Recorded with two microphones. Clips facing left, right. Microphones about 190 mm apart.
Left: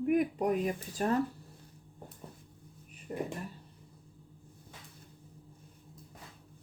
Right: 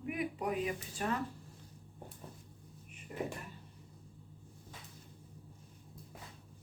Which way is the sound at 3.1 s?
35° left (ahead or behind).